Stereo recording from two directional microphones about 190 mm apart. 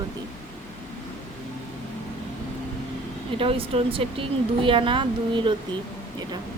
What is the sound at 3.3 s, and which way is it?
A woman's voice, 30° right (ahead or behind).